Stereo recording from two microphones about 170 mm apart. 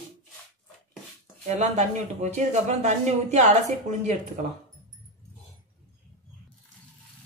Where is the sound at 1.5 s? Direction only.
40° right (ahead or behind).